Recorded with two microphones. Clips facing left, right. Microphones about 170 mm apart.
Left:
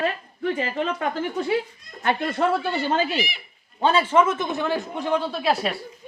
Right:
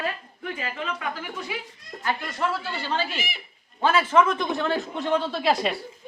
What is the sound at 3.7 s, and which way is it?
A man's voice, 30° left (ahead or behind).